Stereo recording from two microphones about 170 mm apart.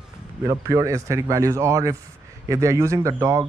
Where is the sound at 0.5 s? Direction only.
20° right (ahead or behind).